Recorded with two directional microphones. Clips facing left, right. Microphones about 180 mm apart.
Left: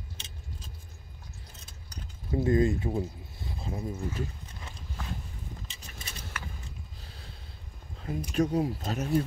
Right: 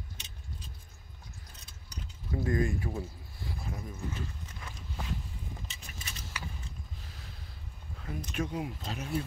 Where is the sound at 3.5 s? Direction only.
25° left (ahead or behind).